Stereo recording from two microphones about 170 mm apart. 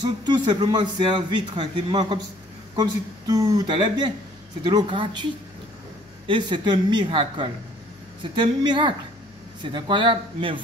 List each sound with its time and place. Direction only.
0.2 s a man's voice: 25° right (ahead or behind)